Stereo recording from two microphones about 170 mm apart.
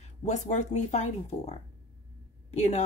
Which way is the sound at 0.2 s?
45° left (ahead or behind).